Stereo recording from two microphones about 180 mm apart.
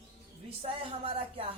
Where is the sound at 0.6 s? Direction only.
30° right (ahead or behind).